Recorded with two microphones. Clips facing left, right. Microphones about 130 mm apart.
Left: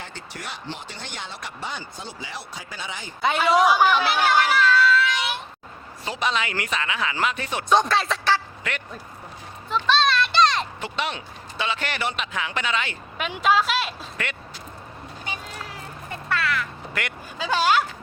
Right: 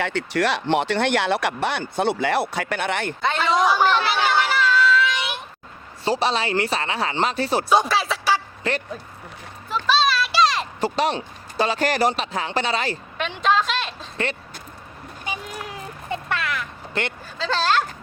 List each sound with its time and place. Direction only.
0.0 s speech: 75° right (ahead or behind)
3.2 s speech: 10° left (ahead or behind)
6.1 s speech: 35° right (ahead or behind)
7.7 s speech: 5° right (ahead or behind)
8.7 s speech: 30° right (ahead or behind)
9.6 s children playing: 5° right (ahead or behind)
10.8 s speech: 40° right (ahead or behind)
13.1 s a woman's voice: 5° left (ahead or behind)
15.3 s a sound: 15° right (ahead or behind)
17.3 s speech: 10° left (ahead or behind)